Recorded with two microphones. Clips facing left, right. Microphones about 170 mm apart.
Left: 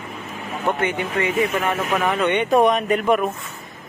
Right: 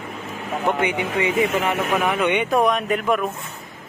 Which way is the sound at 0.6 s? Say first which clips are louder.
Even; 15° right (ahead or behind).